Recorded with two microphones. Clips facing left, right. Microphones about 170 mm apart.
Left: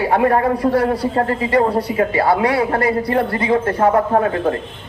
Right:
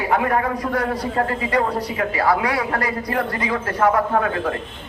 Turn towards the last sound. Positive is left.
turn(degrees=30)  # may be behind; listen again after turning